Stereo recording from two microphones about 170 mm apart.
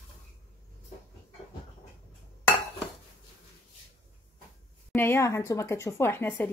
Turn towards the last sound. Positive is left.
turn(degrees=10)  # may be behind; listen again after turning